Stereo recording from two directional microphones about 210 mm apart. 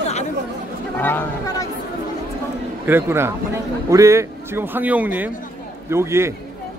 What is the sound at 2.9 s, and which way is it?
A man's voice, 10° right (ahead or behind).